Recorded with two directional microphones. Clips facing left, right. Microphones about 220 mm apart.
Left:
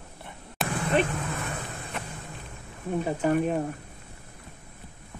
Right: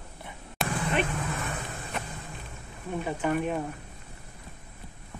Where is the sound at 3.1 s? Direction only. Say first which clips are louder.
Left 3 dB; 40° left (ahead or behind).